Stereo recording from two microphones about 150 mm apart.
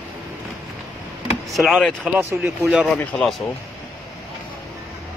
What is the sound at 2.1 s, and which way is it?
Speech, 15° right (ahead or behind).